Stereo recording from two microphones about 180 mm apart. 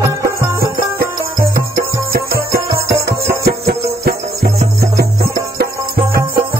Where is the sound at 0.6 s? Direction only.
55° right (ahead or behind).